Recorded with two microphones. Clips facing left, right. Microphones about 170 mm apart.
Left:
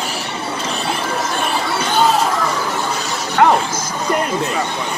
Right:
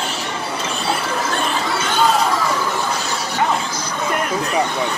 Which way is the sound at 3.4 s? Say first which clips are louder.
Left 7 dB; 65° left (ahead or behind).